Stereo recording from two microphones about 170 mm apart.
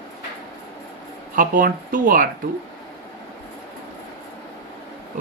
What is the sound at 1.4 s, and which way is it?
Speech, 50° right (ahead or behind).